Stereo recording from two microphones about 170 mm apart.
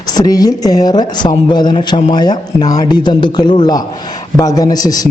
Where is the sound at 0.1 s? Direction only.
25° left (ahead or behind).